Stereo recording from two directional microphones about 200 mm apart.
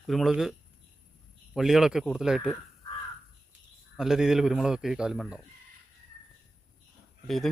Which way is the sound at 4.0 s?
Centre (ahead or behind).